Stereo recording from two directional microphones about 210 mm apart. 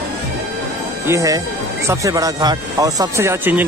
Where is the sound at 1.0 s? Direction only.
15° right (ahead or behind).